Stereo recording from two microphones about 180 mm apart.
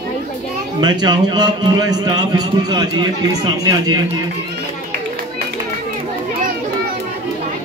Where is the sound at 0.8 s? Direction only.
25° right (ahead or behind).